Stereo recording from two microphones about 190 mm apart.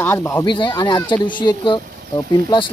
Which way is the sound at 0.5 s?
25° left (ahead or behind).